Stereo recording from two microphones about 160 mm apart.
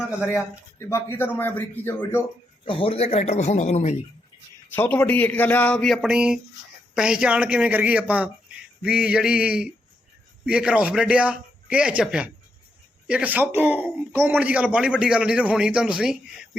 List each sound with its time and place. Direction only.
0.3 s a man's voice: 15° left (ahead or behind)
2.6 s a man's voice: 35° left (ahead or behind)
4.7 s a man's voice: 10° left (ahead or behind); by 8.3 s 10° right (ahead or behind)
8.8 s a sound: 5° right (ahead or behind)
10.4 s speech: 5° right (ahead or behind)